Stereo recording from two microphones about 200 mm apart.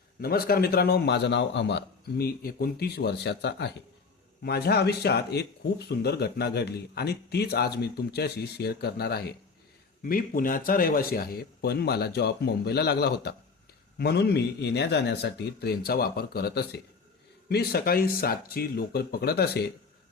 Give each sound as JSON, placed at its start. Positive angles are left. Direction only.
{"t": 0.2, "sound": "a man's voice", "side_deg": 50}